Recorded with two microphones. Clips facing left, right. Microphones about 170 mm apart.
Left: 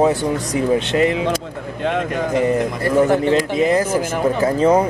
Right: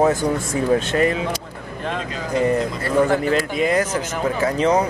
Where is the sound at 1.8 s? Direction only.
65° left (ahead or behind).